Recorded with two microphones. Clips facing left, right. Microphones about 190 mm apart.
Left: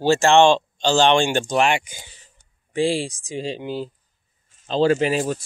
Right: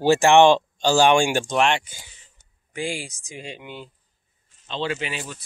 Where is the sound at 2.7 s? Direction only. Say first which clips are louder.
Left 8 dB; 30° left (ahead or behind).